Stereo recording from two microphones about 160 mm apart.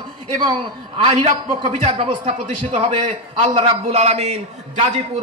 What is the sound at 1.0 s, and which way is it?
A man's voice, 40° right (ahead or behind).